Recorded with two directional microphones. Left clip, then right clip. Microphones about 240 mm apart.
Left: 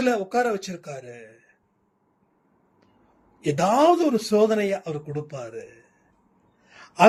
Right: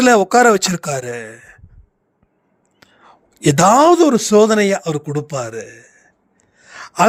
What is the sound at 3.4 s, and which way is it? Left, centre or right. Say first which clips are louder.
A man's voice: right 9 dB; right.